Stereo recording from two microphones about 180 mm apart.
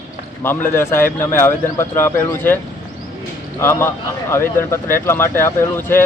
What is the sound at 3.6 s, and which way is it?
Speech, 15° left (ahead or behind).